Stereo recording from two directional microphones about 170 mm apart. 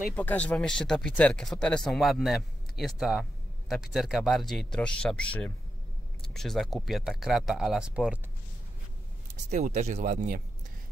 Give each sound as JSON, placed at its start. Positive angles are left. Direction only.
{"t": 0.0, "sound": "speech", "side_deg": 10}
{"t": 9.5, "sound": "speech", "side_deg": -45}